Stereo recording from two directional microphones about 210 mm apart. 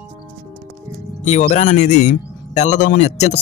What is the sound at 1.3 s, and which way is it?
A man's voice, 35° left (ahead or behind).